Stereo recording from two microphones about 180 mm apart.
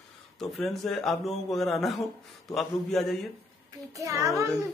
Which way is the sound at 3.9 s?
15° right (ahead or behind).